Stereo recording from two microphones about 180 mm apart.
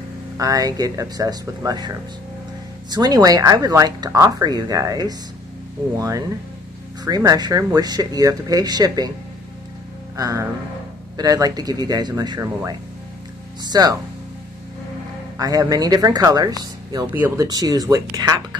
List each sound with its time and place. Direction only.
0.4 s speech: 20° right (ahead or behind)
10.1 s speech: 20° right (ahead or behind)
15.3 s speech: 20° right (ahead or behind)